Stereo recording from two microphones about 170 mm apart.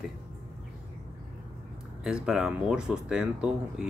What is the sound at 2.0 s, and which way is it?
Speech, 5° right (ahead or behind).